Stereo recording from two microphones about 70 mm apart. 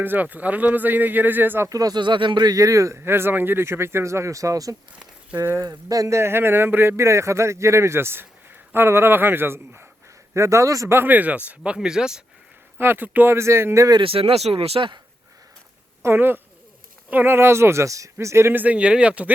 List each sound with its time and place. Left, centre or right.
0.0 s speech: right
1.7 s speech: right
3.0 s a man's voice: right
10.3 s a man's voice: right
10.9 s speech: right; by 12.2 s centre
12.8 s a man's voice: right
14.8 s speech: right
16.0 s a man's voice: right
18.6 s speech: centre